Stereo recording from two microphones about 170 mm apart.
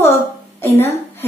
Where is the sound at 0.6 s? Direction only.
10° left (ahead or behind).